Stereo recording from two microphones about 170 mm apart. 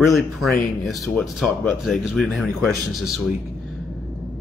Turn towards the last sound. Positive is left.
turn(degrees=0)  # may be behind; listen again after turning